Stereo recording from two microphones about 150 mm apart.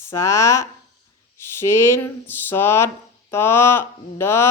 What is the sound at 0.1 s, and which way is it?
A woman's voice, 20° left (ahead or behind).